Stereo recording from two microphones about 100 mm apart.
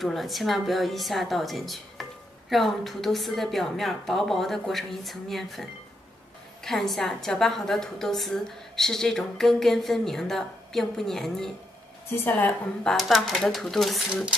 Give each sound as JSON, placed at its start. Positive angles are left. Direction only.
{"t": 0.0, "sound": "a woman's voice", "side_deg": 0}
{"t": 12.1, "sound": "a woman's voice", "side_deg": 20}
{"t": 12.8, "sound": "a woman's voice", "side_deg": 0}